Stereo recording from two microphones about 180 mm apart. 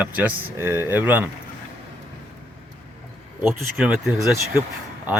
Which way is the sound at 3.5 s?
5° right (ahead or behind).